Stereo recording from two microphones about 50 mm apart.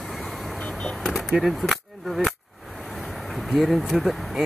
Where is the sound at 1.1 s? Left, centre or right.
Centre.